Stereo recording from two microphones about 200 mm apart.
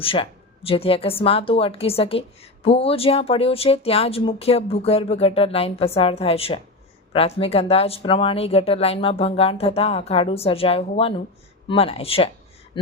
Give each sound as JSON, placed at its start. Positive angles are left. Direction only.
{"t": 0.0, "sound": "speech", "side_deg": 25}